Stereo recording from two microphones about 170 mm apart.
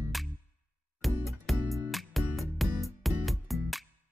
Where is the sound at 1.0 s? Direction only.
Centre (ahead or behind).